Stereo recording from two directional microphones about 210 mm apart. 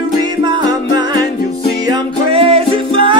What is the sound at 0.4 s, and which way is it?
Music, 20° right (ahead or behind).